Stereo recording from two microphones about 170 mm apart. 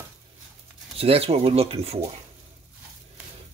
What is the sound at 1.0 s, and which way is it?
Speech, 35° right (ahead or behind).